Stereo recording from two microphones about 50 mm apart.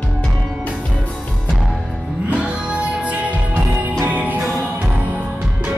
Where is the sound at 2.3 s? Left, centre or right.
Right.